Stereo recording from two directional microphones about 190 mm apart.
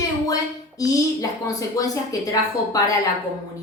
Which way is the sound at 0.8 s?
20° left (ahead or behind).